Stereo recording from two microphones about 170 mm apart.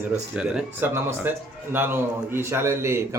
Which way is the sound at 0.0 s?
10° right (ahead or behind).